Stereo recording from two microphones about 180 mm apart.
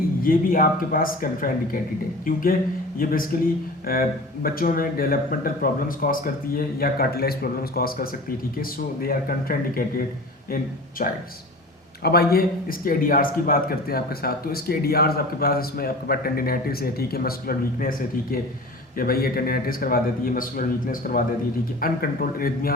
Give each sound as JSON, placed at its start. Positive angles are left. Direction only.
{"t": 0.2, "sound": "a man's voice", "side_deg": 50}